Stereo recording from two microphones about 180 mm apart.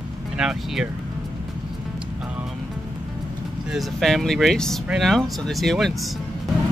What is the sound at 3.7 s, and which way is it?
Speech, centre (ahead or behind).